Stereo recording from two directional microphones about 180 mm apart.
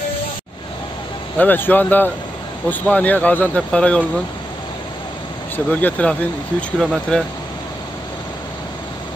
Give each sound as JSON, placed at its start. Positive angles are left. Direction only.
{"t": 1.4, "sound": "speech", "side_deg": 10}
{"t": 5.7, "sound": "speech", "side_deg": 10}